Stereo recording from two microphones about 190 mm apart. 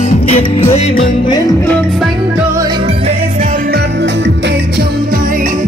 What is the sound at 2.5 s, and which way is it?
Music, 25° right (ahead or behind).